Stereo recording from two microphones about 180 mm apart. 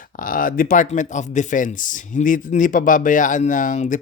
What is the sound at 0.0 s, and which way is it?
Speech, 50° left (ahead or behind).